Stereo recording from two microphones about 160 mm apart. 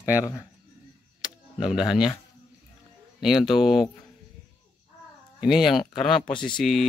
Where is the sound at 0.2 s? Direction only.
20° left (ahead or behind).